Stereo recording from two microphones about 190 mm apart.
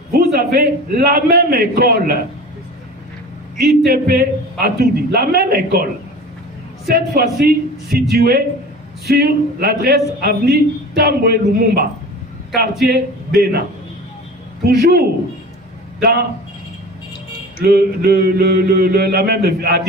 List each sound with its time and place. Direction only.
0.1 s a man's voice: 55° right (ahead or behind)
3.6 s mantra: 55° right (ahead or behind)
7.2 s mantra: 55° right (ahead or behind)
17.6 s mantra: 55° right (ahead or behind)